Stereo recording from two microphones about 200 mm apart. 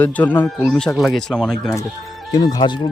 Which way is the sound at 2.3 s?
20° left (ahead or behind).